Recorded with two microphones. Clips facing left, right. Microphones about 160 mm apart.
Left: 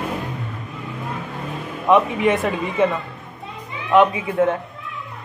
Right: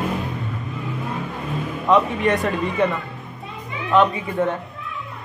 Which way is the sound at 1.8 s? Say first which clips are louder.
Left 2 dB; 15° left (ahead or behind).